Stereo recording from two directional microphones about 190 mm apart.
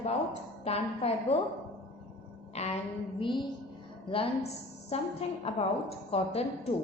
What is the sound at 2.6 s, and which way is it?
A woman's voice, 35° left (ahead or behind).